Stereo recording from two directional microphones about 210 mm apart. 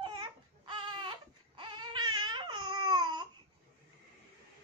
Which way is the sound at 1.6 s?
20° right (ahead or behind).